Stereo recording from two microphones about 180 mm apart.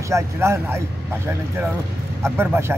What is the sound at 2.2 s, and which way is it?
Speech, 15° right (ahead or behind).